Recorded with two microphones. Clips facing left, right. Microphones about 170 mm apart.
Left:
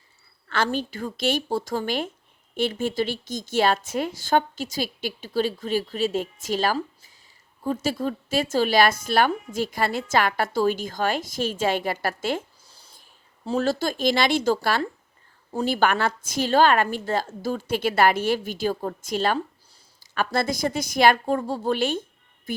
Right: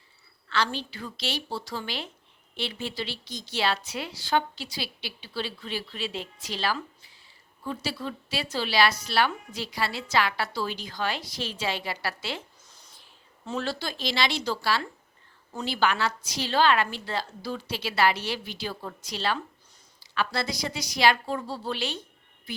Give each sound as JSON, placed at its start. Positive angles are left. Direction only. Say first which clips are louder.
{"t": 0.4, "sound": "speech", "louder": "left 4 dB", "side_deg": 50}
{"t": 13.0, "sound": "speech", "louder": "left 10 dB", "side_deg": 40}